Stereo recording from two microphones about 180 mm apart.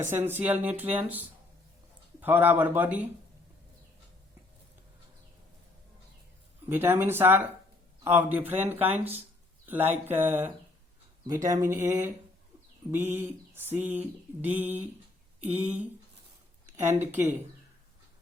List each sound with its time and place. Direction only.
0.1 s speech: 10° right (ahead or behind)
6.7 s speech: 10° right (ahead or behind)
16.8 s speech: 10° right (ahead or behind)